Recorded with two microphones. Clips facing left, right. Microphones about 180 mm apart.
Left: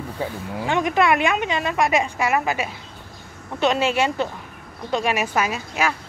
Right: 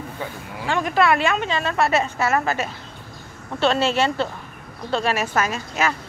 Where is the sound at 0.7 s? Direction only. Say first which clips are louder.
Even; 20° left (ahead or behind).